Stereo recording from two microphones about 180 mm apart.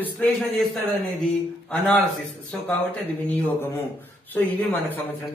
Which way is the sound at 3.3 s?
10° left (ahead or behind).